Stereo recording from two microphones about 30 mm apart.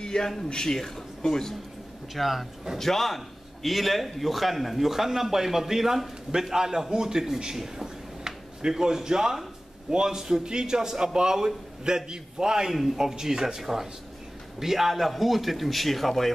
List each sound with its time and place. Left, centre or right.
0.0 s a sound: left
0.5 s speech: left
0.7 s speech: centre
2.1 s a man's voice: centre; by 7.5 s right
7.8 s a sound: right
9.8 s a man's voice: centre
13.6 s a man's voice: centre